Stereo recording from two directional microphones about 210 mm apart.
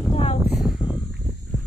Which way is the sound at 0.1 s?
25° left (ahead or behind).